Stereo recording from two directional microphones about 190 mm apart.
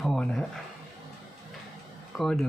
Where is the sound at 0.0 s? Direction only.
Centre (ahead or behind).